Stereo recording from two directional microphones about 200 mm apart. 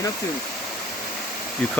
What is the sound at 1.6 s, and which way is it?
Speech, 5° left (ahead or behind).